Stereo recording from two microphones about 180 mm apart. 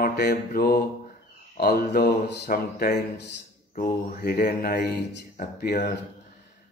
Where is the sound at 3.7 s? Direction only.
50° left (ahead or behind).